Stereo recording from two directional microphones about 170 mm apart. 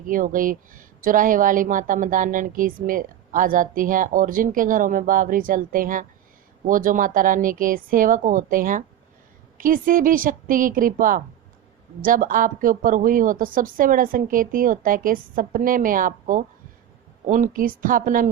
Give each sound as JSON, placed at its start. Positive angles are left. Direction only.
{"t": 0.0, "sound": "speech", "side_deg": -50}